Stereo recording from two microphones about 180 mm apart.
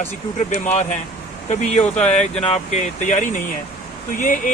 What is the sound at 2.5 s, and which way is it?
Speech, 40° left (ahead or behind).